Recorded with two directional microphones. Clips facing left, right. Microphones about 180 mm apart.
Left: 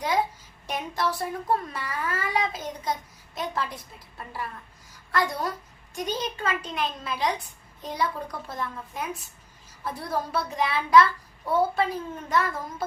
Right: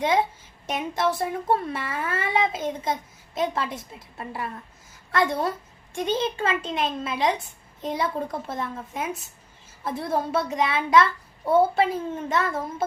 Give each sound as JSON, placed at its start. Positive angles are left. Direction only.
{"t": 0.7, "sound": "speech", "side_deg": -20}
{"t": 4.9, "sound": "a sound", "side_deg": -25}
{"t": 5.9, "sound": "speech", "side_deg": -25}